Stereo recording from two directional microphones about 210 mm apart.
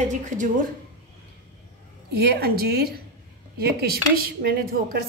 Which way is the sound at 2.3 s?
45° right (ahead or behind).